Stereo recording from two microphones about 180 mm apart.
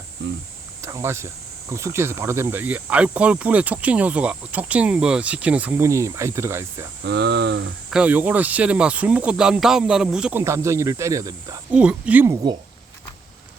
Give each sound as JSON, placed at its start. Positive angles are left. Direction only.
{"t": 0.8, "sound": "speech", "side_deg": -15}
{"t": 7.0, "sound": "speech", "side_deg": -70}
{"t": 7.9, "sound": "speech", "side_deg": -5}
{"t": 10.4, "sound": "speech", "side_deg": -15}
{"t": 11.7, "sound": "speech", "side_deg": -5}